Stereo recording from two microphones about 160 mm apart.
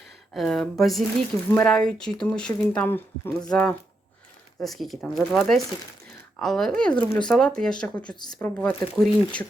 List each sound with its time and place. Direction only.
0.3 s speech: centre (ahead or behind)